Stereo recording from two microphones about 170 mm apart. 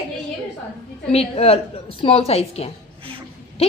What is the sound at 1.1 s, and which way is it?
A woman's voice, 35° left (ahead or behind).